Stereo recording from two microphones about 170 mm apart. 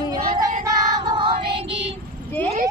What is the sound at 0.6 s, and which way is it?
Child singing, 25° right (ahead or behind).